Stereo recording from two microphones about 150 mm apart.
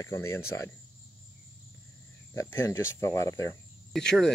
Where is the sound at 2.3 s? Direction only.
20° left (ahead or behind).